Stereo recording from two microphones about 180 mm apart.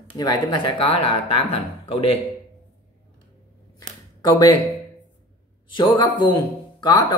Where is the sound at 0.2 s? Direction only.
25° left (ahead or behind).